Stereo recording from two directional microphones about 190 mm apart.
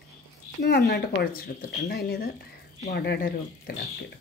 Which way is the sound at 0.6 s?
60° left (ahead or behind).